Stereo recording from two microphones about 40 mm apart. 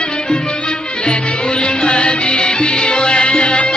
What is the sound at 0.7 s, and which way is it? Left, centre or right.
Music, left.